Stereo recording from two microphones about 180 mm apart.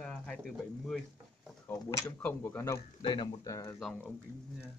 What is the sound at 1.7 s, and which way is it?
Speech, 15° left (ahead or behind).